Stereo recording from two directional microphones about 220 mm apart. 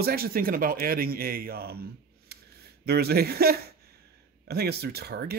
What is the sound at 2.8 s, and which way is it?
Speech, 45° right (ahead or behind).